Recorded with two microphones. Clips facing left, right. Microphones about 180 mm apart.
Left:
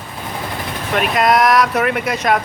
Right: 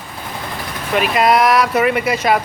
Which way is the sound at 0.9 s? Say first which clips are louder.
Right 1 dB; centre (ahead or behind).